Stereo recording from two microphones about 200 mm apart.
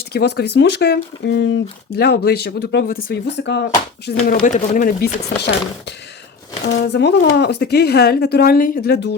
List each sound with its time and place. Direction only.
0.1 s speech: 55° left (ahead or behind)
4.4 s speech: 40° left (ahead or behind)
6.7 s speech: 60° left (ahead or behind)